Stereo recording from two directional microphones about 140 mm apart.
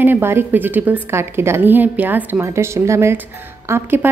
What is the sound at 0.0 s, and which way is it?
A woman's voice, 15° right (ahead or behind).